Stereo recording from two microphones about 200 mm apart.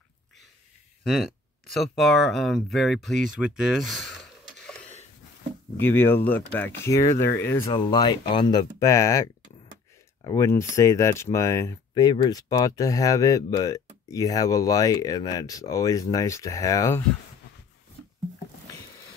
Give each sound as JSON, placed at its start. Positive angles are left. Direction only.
{"t": 1.0, "sound": "speech", "side_deg": 0}
{"t": 7.2, "sound": "speech", "side_deg": 55}
{"t": 7.5, "sound": "speech", "side_deg": 25}
{"t": 10.2, "sound": "speech", "side_deg": 15}